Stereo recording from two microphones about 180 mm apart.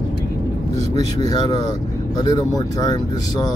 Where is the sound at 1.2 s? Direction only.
20° left (ahead or behind).